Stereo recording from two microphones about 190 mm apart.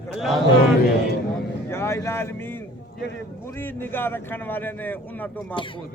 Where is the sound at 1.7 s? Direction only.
15° left (ahead or behind).